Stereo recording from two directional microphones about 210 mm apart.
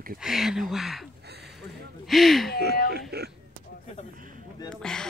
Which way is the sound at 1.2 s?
50° right (ahead or behind).